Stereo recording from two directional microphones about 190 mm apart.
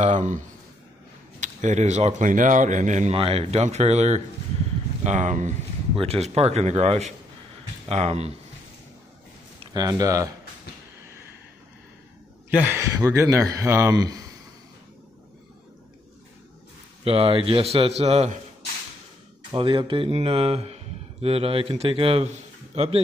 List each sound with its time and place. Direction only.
0.0 s speech: 40° right (ahead or behind)
1.4 s a man's voice: 40° right (ahead or behind)
9.6 s speech: 20° right (ahead or behind)
12.4 s speech: 10° right (ahead or behind)
17.0 s a man's voice: 30° right (ahead or behind)
19.5 s a man's voice: 25° right (ahead or behind)